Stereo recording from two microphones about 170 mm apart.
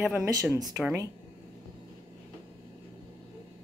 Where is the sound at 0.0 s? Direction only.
10° right (ahead or behind).